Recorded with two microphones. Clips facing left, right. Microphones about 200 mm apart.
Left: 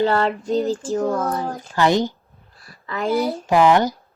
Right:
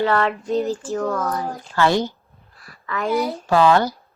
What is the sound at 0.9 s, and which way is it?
A woman's voice, 20° left (ahead or behind).